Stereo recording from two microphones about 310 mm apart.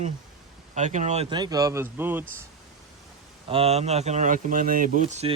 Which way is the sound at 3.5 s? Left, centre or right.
Centre.